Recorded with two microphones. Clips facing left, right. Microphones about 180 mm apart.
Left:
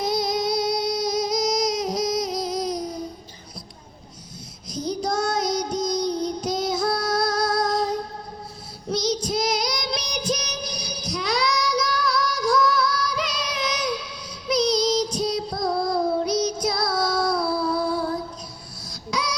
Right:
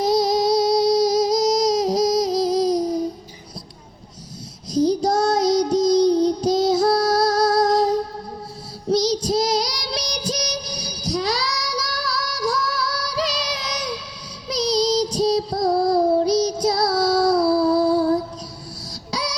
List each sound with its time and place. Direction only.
0.0 s music: 35° right (ahead or behind)
4.7 s child singing: 35° right (ahead or behind)
19.1 s a sound: 35° right (ahead or behind)